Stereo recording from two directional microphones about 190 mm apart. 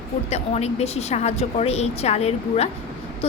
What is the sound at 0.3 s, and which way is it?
A woman's voice, 35° left (ahead or behind).